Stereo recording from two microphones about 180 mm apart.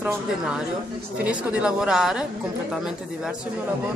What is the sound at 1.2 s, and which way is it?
Speech, 5° right (ahead or behind).